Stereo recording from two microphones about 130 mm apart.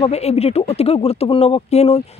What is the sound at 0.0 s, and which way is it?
Speech, 55° left (ahead or behind).